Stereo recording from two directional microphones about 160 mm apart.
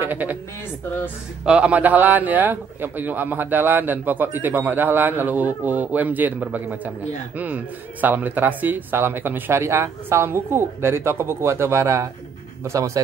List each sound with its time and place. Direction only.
0.0 s speech: 10° right (ahead or behind)
1.4 s a man's voice: 5° right (ahead or behind)